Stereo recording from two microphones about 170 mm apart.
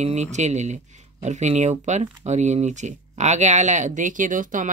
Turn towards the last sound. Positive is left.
turn(degrees=-50)  # may be behind; listen again after turning